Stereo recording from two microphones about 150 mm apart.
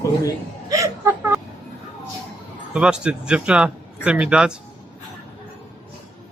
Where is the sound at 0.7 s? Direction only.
20° right (ahead or behind).